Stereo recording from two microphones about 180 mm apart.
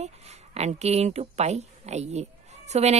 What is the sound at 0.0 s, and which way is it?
A woman's voice, 40° right (ahead or behind).